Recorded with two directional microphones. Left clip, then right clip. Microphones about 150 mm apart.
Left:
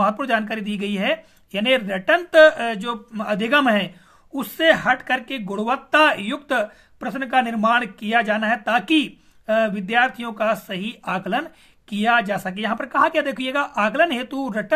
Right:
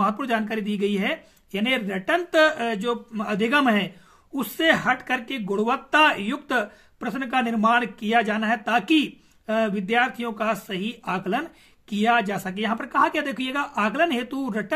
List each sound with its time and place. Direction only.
0.0 s speech: 30° left (ahead or behind)